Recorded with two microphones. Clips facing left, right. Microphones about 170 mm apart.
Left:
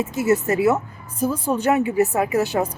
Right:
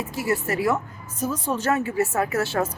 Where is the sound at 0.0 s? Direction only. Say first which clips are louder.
Left 6 dB; 20° left (ahead or behind).